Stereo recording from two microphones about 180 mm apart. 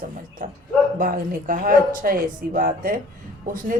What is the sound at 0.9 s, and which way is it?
Speech, 50° right (ahead or behind).